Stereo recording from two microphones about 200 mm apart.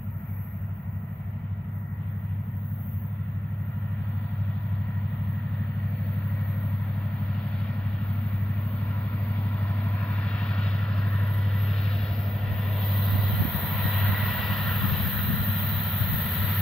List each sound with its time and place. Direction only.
9.9 s vehicle: 5° left (ahead or behind)
12.8 s vehicle: centre (ahead or behind)